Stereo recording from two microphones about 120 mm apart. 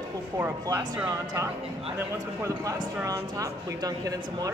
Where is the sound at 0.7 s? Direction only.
25° right (ahead or behind).